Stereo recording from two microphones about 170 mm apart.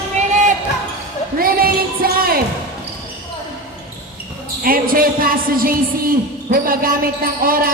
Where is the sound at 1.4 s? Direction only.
60° right (ahead or behind).